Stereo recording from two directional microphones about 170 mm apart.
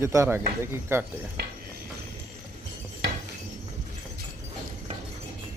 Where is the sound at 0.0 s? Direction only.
15° right (ahead or behind).